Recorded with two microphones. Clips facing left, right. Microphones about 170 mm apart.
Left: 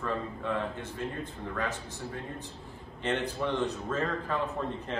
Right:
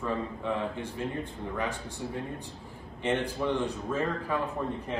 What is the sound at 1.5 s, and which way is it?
A man's voice, 15° right (ahead or behind).